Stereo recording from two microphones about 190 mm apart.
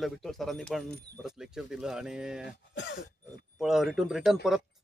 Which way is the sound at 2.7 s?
65° left (ahead or behind).